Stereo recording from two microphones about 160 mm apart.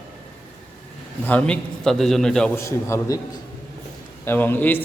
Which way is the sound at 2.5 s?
15° left (ahead or behind).